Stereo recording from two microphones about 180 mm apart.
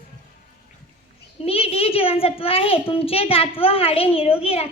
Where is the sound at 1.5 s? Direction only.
35° left (ahead or behind).